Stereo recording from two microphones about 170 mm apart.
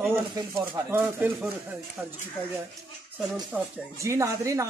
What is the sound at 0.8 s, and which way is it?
Speech, 15° right (ahead or behind).